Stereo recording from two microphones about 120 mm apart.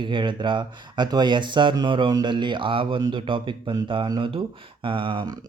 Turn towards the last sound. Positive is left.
turn(degrees=-45)  # may be behind; listen again after turning